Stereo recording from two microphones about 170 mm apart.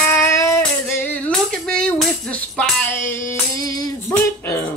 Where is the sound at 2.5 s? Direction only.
5° left (ahead or behind).